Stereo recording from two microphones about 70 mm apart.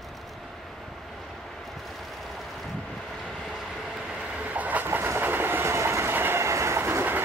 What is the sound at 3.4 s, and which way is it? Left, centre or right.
Train, centre.